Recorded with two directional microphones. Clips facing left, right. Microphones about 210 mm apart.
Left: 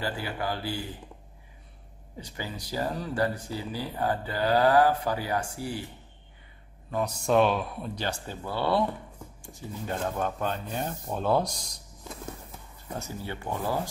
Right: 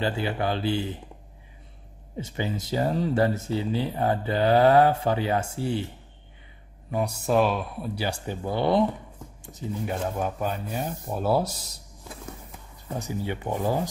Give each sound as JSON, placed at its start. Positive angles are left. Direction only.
{"t": 0.0, "sound": "speech", "side_deg": -25}
{"t": 2.1, "sound": "speech", "side_deg": -25}
{"t": 6.9, "sound": "speech", "side_deg": -10}
{"t": 9.9, "sound": "speech", "side_deg": -10}
{"t": 12.9, "sound": "speech", "side_deg": -15}